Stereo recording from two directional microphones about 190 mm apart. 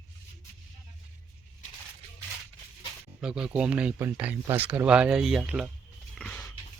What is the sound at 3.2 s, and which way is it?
Speech, 5° right (ahead or behind).